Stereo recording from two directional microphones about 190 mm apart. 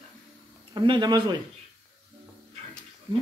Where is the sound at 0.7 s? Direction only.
25° right (ahead or behind).